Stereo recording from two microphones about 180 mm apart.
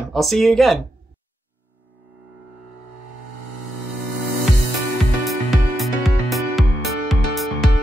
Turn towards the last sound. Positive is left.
turn(degrees=0)  # may be behind; listen again after turning